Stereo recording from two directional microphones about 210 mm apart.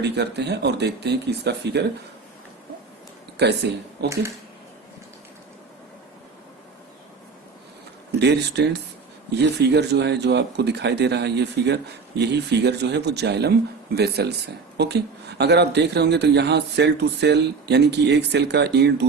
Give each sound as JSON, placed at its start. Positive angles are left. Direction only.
{"t": 0.0, "sound": "speech", "side_deg": -50}
{"t": 3.3, "sound": "speech", "side_deg": -50}
{"t": 8.2, "sound": "speech", "side_deg": -55}